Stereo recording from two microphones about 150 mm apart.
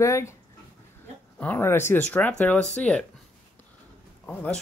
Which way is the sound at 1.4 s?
15° left (ahead or behind).